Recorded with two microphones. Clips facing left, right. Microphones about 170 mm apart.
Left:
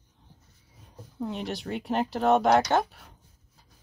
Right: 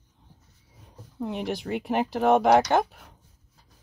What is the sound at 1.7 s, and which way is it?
Speech, 10° right (ahead or behind).